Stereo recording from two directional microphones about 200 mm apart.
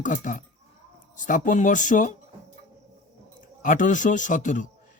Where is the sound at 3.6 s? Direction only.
40° left (ahead or behind).